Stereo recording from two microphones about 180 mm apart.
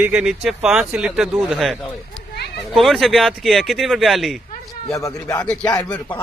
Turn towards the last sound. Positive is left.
turn(degrees=25)  # may be behind; listen again after turning